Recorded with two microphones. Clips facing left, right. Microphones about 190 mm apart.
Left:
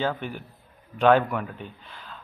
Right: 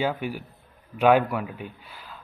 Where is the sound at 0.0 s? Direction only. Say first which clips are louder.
Right 1 dB; 10° right (ahead or behind).